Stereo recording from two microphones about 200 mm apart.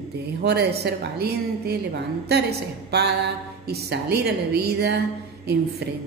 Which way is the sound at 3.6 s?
55° right (ahead or behind).